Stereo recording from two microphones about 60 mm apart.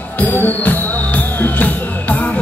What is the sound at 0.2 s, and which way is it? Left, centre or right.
Music, left.